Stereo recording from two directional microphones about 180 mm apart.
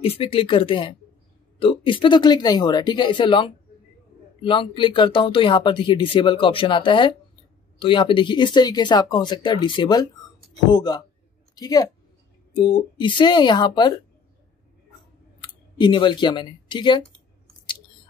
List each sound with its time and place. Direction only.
0.0 s a woman's voice: 30° left (ahead or behind)
15.4 s speech: 25° left (ahead or behind)